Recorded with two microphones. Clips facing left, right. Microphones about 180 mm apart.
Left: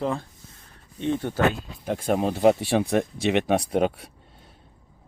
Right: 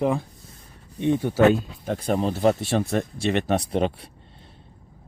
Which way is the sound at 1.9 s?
10° left (ahead or behind).